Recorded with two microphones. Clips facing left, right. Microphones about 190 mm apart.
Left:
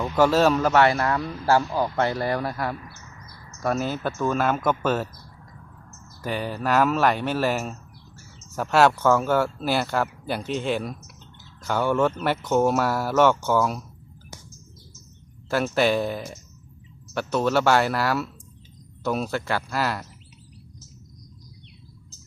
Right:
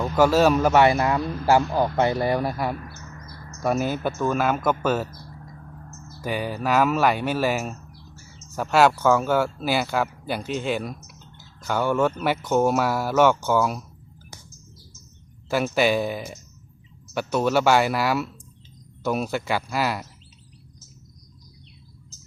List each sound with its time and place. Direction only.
0.0 s a man's voice: 5° right (ahead or behind)
6.2 s speech: 10° right (ahead or behind)
15.4 s a man's voice: 5° right (ahead or behind)